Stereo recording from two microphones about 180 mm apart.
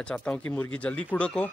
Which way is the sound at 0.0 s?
5° left (ahead or behind).